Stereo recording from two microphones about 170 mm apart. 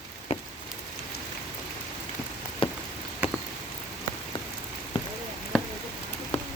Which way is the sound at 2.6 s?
30° left (ahead or behind).